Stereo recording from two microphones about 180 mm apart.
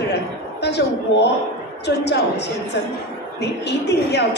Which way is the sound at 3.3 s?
70° left (ahead or behind).